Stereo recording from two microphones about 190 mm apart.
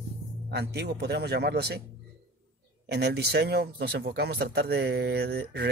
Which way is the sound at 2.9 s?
60° right (ahead or behind).